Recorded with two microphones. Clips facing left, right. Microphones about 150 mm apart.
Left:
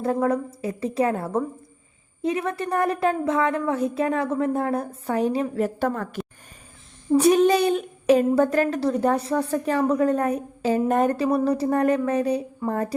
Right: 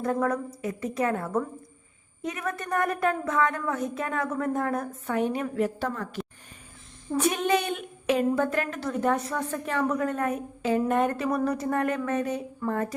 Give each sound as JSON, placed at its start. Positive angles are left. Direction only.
{"t": 0.0, "sound": "a woman's voice", "side_deg": 30}
{"t": 5.6, "sound": "speech", "side_deg": 50}
{"t": 7.2, "sound": "a woman's voice", "side_deg": 35}